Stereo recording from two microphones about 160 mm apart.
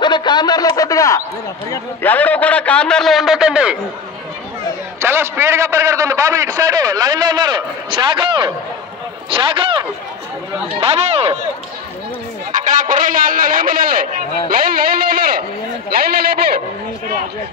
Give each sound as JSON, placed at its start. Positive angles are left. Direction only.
{"t": 0.0, "sound": "a man's voice", "side_deg": 30}
{"t": 5.0, "sound": "a man's voice", "side_deg": -15}
{"t": 10.8, "sound": "speech", "side_deg": -40}
{"t": 12.5, "sound": "a man's voice", "side_deg": -55}